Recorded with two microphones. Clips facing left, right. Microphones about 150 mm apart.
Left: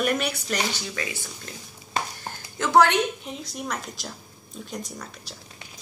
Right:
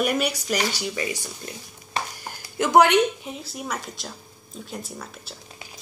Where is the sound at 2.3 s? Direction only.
15° right (ahead or behind).